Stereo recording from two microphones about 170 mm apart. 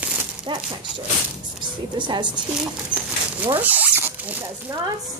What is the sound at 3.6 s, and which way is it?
Rodents, 10° right (ahead or behind).